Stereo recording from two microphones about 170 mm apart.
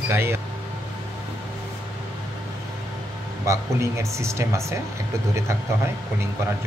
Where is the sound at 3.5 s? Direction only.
15° right (ahead or behind).